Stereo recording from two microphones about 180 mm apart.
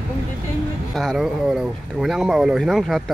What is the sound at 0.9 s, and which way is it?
Speech, centre (ahead or behind).